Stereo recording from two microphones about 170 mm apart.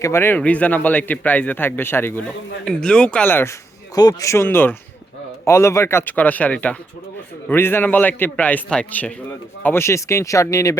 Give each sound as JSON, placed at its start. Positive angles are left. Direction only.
{"t": 0.0, "sound": "speech", "side_deg": 15}